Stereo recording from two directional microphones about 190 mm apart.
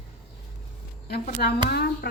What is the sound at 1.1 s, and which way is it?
A woman's voice, 55° left (ahead or behind).